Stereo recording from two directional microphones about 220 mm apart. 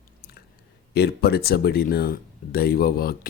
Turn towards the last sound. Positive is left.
turn(degrees=40)  # may be behind; listen again after turning